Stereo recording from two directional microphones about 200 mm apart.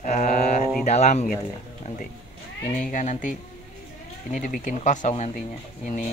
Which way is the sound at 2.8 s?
40° left (ahead or behind).